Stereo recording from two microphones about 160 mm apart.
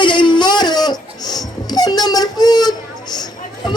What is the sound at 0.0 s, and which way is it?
Crying, 30° left (ahead or behind).